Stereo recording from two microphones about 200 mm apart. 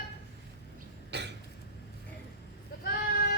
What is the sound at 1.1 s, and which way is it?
Cough, 60° right (ahead or behind).